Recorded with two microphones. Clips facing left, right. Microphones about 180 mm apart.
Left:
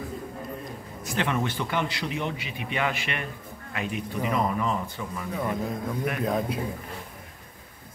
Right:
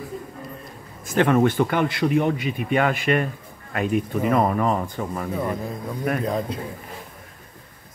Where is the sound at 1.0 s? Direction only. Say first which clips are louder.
Right 10 dB; 50° right (ahead or behind).